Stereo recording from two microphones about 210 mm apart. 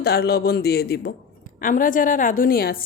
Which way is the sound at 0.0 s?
50° left (ahead or behind).